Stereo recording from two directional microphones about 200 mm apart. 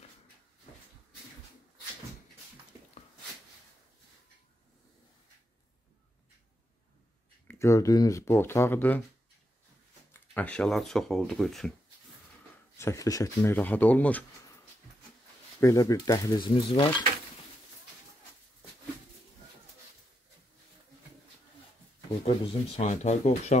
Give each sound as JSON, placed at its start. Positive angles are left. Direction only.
{"t": 7.4, "sound": "speech", "side_deg": 15}
{"t": 10.1, "sound": "speech", "side_deg": 5}
{"t": 12.7, "sound": "speech", "side_deg": 15}
{"t": 15.6, "sound": "speech", "side_deg": 15}
{"t": 22.2, "sound": "speech", "side_deg": 30}